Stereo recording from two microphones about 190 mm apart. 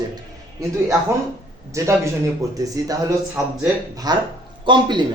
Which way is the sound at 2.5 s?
20° right (ahead or behind).